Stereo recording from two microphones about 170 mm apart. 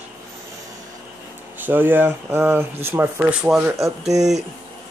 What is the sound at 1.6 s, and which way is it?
Speech, 10° right (ahead or behind).